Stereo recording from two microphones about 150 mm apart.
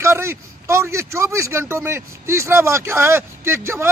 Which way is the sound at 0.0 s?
15° right (ahead or behind).